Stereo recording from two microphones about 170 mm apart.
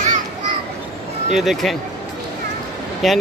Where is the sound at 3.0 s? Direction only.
Centre (ahead or behind).